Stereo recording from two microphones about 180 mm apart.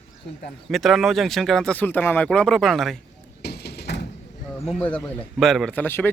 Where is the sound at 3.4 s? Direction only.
65° left (ahead or behind).